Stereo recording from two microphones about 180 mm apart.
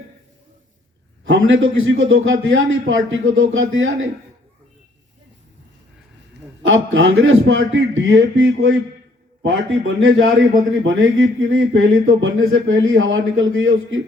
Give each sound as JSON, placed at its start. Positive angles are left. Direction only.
{"t": 1.2, "sound": "speech", "side_deg": -90}
{"t": 6.6, "sound": "speech", "side_deg": -90}
{"t": 9.4, "sound": "speech", "side_deg": -90}